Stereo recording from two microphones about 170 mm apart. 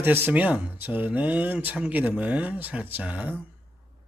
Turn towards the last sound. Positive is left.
turn(degrees=-10)  # may be behind; listen again after turning